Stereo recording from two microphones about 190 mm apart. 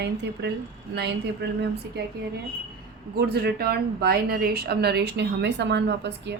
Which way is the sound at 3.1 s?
55° right (ahead or behind).